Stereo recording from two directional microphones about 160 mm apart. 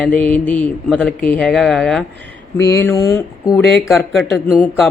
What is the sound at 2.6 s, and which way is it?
Mantra, 20° left (ahead or behind).